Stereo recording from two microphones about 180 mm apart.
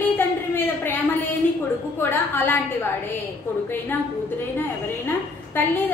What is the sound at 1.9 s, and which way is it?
Speech, 10° left (ahead or behind).